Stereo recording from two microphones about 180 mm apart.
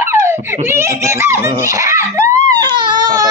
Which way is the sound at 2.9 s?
20° right (ahead or behind).